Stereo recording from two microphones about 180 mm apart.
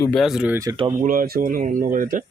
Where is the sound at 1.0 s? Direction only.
50° right (ahead or behind).